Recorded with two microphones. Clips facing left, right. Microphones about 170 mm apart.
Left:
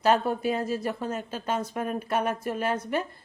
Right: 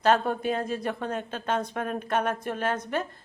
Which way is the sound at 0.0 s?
5° left (ahead or behind).